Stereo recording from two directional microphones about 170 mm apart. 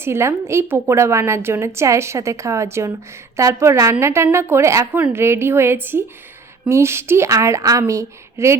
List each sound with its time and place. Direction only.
0.0 s a woman's voice: 15° right (ahead or behind)